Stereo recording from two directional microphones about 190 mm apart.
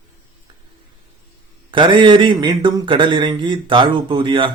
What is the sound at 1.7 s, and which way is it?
A man's voice, 25° right (ahead or behind).